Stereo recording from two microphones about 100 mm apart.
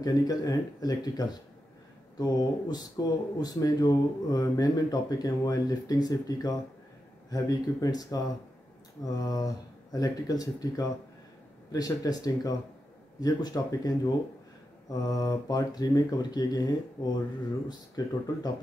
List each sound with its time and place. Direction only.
0.0 s speech: 40° left (ahead or behind)